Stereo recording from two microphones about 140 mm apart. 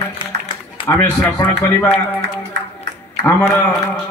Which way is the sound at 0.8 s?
20° left (ahead or behind).